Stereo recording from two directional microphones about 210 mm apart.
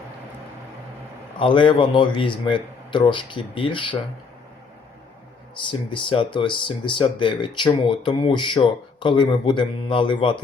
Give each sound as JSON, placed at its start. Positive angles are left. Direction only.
{"t": 1.4, "sound": "speech", "side_deg": 25}
{"t": 5.5, "sound": "speech", "side_deg": 25}